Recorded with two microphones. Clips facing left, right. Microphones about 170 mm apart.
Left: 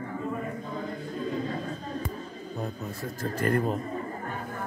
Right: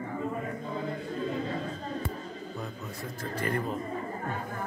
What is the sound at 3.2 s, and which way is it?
Speech, 40° left (ahead or behind).